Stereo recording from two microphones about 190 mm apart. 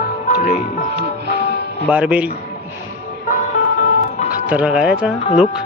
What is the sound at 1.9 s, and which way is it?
Speech, 5° right (ahead or behind).